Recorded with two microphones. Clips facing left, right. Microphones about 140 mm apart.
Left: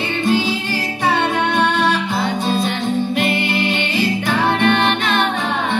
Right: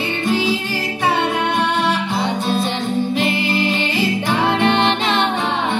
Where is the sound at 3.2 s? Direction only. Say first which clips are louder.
Even; 30° right (ahead or behind).